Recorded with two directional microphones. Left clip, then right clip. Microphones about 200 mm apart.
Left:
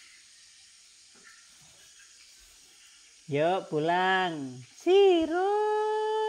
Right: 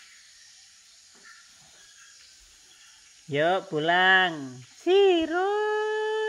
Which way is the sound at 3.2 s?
5° left (ahead or behind).